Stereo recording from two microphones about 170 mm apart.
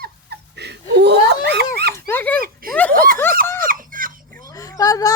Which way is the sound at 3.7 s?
55° right (ahead or behind).